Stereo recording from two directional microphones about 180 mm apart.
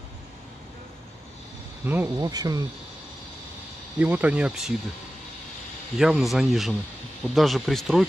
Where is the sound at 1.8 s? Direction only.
10° right (ahead or behind).